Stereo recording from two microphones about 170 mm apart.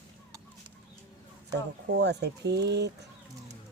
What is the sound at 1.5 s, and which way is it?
Speech, 80° right.